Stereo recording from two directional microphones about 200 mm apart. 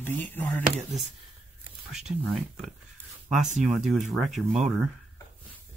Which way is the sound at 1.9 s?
Centre (ahead or behind).